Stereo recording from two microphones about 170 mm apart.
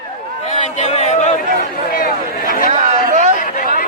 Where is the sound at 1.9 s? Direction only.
60° left (ahead or behind).